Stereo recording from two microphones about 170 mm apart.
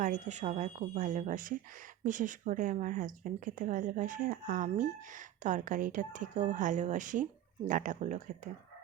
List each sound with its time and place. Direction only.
0.0 s speech: 45° right (ahead or behind)